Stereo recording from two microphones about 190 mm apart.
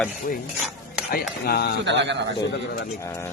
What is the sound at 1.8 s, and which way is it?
Speech, 65° right (ahead or behind).